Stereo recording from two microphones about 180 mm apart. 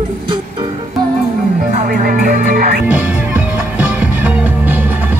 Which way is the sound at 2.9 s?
10° right (ahead or behind).